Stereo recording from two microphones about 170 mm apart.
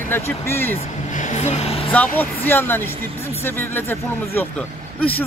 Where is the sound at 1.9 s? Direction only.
10° left (ahead or behind).